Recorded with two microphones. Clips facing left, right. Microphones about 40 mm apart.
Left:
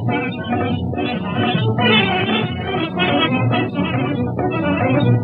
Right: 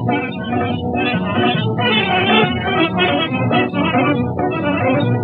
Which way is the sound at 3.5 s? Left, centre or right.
Right.